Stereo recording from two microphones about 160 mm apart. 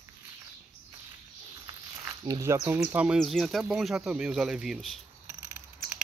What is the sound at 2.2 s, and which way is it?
Speech, 20° right (ahead or behind).